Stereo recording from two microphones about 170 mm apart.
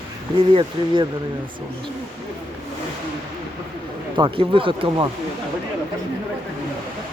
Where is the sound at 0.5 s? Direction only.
30° right (ahead or behind).